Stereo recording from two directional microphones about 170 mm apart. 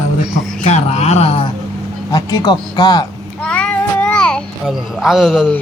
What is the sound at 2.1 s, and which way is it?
Speech, 20° left (ahead or behind).